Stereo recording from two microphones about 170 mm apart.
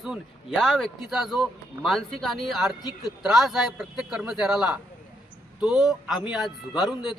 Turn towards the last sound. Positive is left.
turn(degrees=0)  # may be behind; listen again after turning